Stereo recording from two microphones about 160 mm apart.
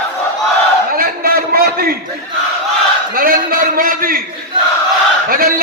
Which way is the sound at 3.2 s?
65° right (ahead or behind).